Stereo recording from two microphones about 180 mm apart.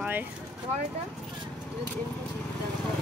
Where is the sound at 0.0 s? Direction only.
10° right (ahead or behind).